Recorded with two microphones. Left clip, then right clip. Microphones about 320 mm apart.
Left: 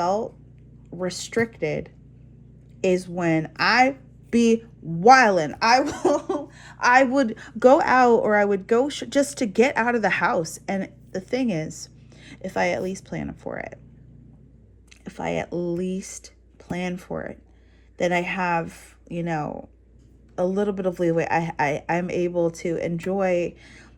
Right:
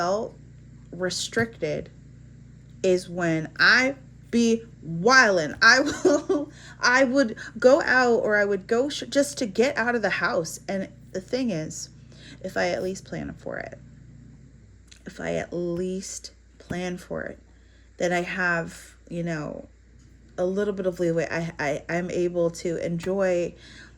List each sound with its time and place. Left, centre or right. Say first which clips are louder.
1.0 s speech: left 1 dB; centre
15.0 s speech: left 2 dB; centre